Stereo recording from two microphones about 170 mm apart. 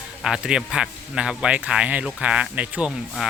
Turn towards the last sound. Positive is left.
turn(degrees=-5)  # may be behind; listen again after turning